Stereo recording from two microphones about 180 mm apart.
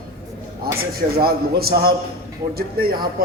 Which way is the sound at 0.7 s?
55° right (ahead or behind).